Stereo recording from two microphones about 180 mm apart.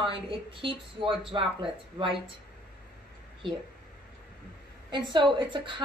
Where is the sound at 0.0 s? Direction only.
30° right (ahead or behind).